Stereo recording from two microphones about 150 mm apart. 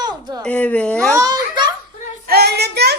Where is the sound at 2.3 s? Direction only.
90° right.